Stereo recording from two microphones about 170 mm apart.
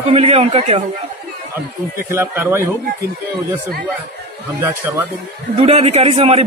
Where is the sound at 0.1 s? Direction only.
35° right (ahead or behind).